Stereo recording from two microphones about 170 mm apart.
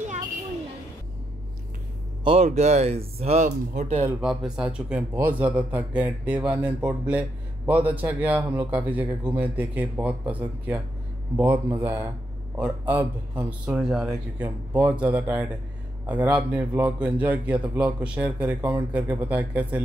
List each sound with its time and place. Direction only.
2.2 s speech: 40° right (ahead or behind)
4.6 s a man's voice: 5° right (ahead or behind)
13.7 s a man's voice: centre (ahead or behind)